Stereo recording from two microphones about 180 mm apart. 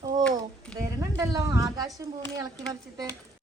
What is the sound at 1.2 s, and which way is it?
Speech, 20° right (ahead or behind).